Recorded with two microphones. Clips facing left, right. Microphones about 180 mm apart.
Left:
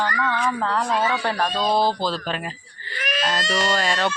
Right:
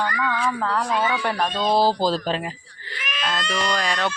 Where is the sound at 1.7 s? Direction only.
35° right (ahead or behind).